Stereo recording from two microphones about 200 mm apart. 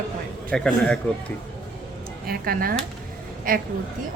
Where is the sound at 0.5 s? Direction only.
5° left (ahead or behind).